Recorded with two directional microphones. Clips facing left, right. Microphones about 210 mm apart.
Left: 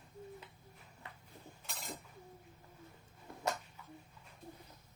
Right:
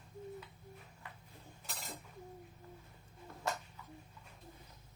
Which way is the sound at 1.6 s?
Centre (ahead or behind).